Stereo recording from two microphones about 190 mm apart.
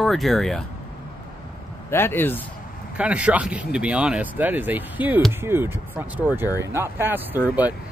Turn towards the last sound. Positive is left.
turn(degrees=-10)  # may be behind; listen again after turning